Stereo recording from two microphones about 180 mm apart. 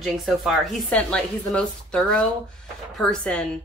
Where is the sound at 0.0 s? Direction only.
Centre (ahead or behind).